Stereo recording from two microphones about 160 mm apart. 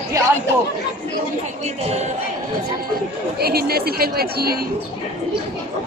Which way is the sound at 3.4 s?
75° right (ahead or behind).